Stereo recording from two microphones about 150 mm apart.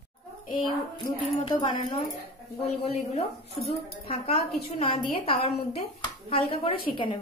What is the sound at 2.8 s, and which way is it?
A woman's voice, 45° left (ahead or behind).